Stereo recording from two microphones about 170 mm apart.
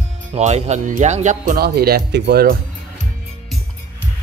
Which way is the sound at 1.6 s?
65° right (ahead or behind).